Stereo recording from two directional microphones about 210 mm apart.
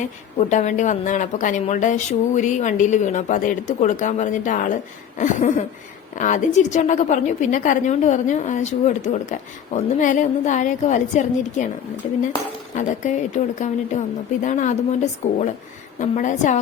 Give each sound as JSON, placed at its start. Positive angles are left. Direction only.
{"t": 0.0, "sound": "a woman's voice", "side_deg": 35}